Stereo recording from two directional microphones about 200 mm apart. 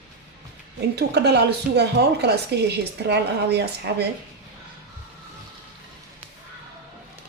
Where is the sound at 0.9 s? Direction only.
55° right (ahead or behind).